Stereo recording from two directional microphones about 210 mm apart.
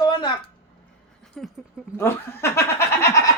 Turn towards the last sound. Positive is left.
turn(degrees=15)  # may be behind; listen again after turning